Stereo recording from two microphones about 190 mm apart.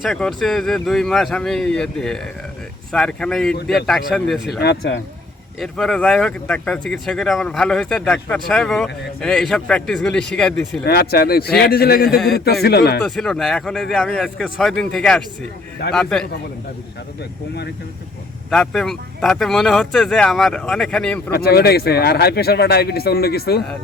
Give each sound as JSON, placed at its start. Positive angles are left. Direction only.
{"t": 0.0, "sound": "speech", "side_deg": 0}
{"t": 4.6, "sound": "speech", "side_deg": 60}
{"t": 5.5, "sound": "speech", "side_deg": 0}
{"t": 10.8, "sound": "a man's voice", "side_deg": 55}
{"t": 13.0, "sound": "speech", "side_deg": 5}
{"t": 18.5, "sound": "speech", "side_deg": 0}
{"t": 21.2, "sound": "speech", "side_deg": 55}